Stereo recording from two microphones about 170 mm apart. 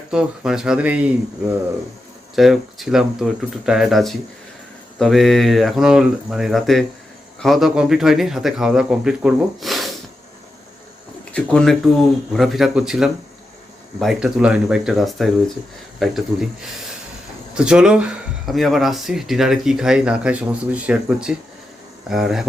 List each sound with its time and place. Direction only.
0.1 s speech: 5° right (ahead or behind)
2.3 s speech: centre (ahead or behind)
11.3 s speech: 5° left (ahead or behind)
17.5 s speech: 5° right (ahead or behind)